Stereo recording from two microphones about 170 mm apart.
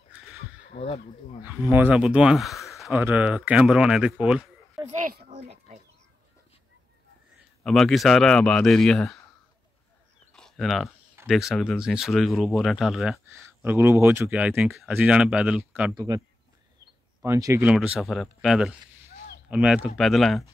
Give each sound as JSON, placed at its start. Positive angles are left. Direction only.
{"t": 0.7, "sound": "speech", "side_deg": 35}
{"t": 1.4, "sound": "speech", "side_deg": -10}
{"t": 4.8, "sound": "a child's voice", "side_deg": -50}
{"t": 7.6, "sound": "speech", "side_deg": 0}
{"t": 10.3, "sound": "a sound", "side_deg": 0}
{"t": 11.2, "sound": "speech", "side_deg": 0}
{"t": 13.2, "sound": "speech", "side_deg": -15}
{"t": 15.9, "sound": "speech", "side_deg": -20}
{"t": 17.2, "sound": "speech", "side_deg": -15}
{"t": 17.6, "sound": "speech", "side_deg": -5}